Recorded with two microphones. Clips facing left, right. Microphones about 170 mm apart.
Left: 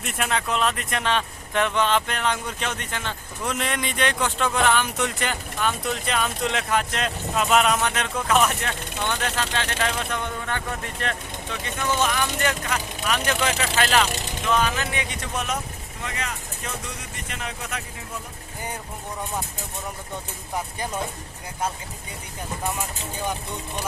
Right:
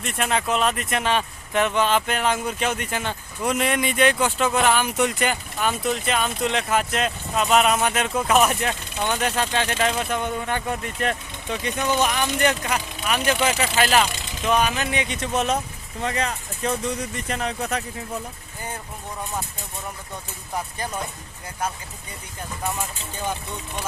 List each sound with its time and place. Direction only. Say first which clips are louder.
0.0 s speech: right 2 dB; 5° left (ahead or behind); by 15.5 s 25° right (ahead or behind)
16.0 s speech: right 7 dB; 35° right (ahead or behind)